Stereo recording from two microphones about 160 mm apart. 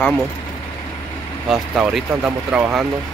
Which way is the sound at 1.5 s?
5° right (ahead or behind).